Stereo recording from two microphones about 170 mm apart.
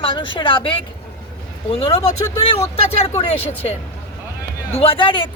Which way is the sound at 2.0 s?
15° left (ahead or behind).